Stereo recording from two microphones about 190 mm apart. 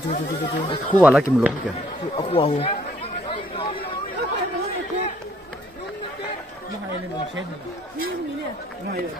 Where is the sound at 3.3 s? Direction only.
25° left (ahead or behind).